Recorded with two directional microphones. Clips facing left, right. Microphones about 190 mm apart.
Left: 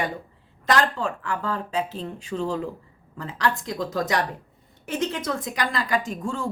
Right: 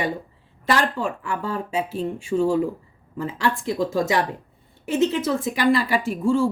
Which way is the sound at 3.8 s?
10° right (ahead or behind).